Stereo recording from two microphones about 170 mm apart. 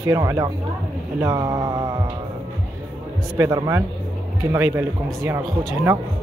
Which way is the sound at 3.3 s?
20° right (ahead or behind).